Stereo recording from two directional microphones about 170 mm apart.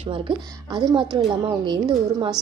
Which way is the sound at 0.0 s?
30° right (ahead or behind).